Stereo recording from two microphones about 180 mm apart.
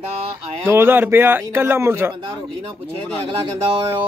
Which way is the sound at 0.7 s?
10° right (ahead or behind).